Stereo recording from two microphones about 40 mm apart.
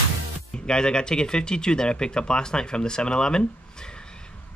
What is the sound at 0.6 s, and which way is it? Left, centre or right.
Speech, left.